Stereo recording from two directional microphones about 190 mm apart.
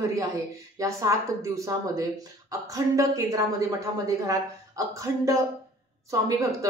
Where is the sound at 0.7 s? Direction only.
15° right (ahead or behind).